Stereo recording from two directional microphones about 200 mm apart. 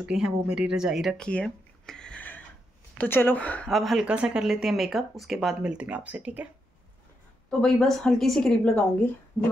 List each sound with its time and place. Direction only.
0.0 s speech: 5° right (ahead or behind)